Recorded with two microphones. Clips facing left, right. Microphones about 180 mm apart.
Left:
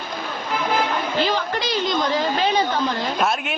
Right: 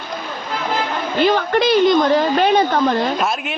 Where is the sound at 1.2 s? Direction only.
60° right (ahead or behind).